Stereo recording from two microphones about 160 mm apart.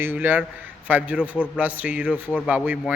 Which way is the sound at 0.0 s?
10° right (ahead or behind).